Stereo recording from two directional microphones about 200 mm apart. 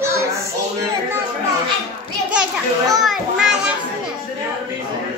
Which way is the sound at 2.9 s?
Centre (ahead or behind).